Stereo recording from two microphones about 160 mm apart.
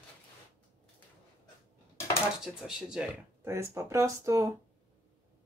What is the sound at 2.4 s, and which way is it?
Speech, 5° right (ahead or behind).